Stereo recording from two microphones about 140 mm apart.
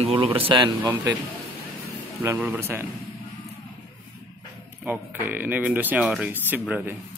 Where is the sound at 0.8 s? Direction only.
15° right (ahead or behind).